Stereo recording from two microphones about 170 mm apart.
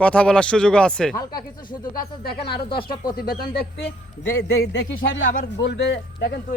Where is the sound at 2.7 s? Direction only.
60° left (ahead or behind).